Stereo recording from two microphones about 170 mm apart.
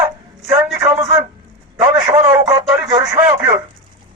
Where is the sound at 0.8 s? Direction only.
30° right (ahead or behind).